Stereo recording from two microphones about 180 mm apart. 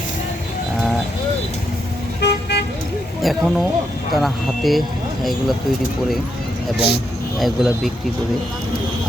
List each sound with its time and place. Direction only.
2.2 s vehicle: 70° left (ahead or behind)
3.2 s speech: centre (ahead or behind)
6.7 s speech: 65° left (ahead or behind)
7.3 s speech: centre (ahead or behind)